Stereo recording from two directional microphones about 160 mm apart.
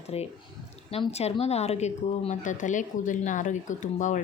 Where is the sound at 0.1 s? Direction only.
40° left (ahead or behind).